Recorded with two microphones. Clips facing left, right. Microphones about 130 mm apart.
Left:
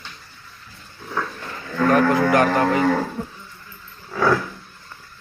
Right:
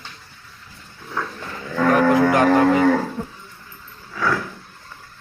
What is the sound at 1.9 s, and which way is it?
Music, 20° right (ahead or behind).